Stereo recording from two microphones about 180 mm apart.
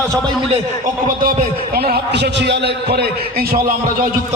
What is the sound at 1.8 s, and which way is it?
A man's voice, 60° right (ahead or behind).